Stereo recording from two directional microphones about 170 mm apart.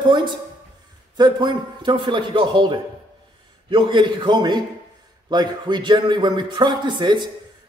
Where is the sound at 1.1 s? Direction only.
25° right (ahead or behind).